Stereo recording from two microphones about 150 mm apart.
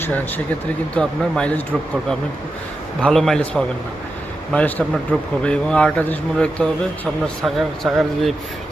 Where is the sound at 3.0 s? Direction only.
Centre (ahead or behind).